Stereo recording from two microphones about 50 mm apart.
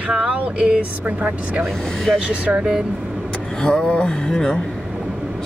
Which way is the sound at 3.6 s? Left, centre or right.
Centre.